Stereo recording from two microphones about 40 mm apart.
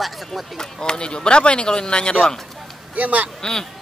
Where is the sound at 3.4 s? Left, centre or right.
Centre.